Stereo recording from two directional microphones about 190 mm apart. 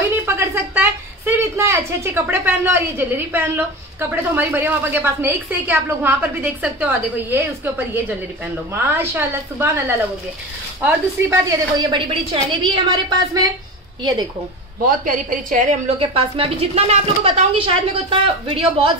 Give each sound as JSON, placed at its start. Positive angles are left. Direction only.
{"t": 0.1, "sound": "a woman's voice", "side_deg": -10}
{"t": 15.0, "sound": "a woman's voice", "side_deg": -45}
{"t": 16.0, "sound": "a woman's voice", "side_deg": -30}